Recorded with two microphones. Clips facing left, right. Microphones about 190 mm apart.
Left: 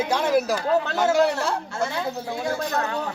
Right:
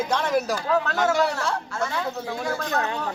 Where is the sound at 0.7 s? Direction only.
25° left (ahead or behind).